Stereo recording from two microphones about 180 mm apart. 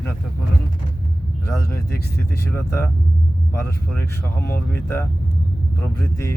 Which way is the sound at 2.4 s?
15° left (ahead or behind).